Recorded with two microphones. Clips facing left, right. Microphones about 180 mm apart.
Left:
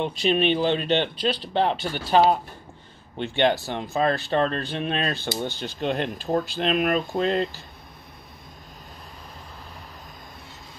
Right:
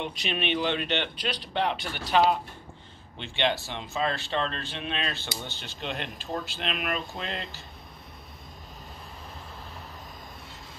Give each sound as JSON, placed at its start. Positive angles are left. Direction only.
{"t": 0.0, "sound": "speech", "side_deg": 35}
{"t": 3.2, "sound": "speech", "side_deg": 50}